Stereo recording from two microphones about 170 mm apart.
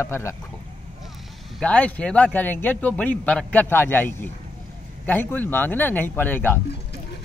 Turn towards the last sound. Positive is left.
turn(degrees=10)  # may be behind; listen again after turning